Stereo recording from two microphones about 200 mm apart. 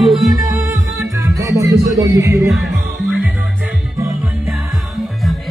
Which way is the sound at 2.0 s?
15° right (ahead or behind).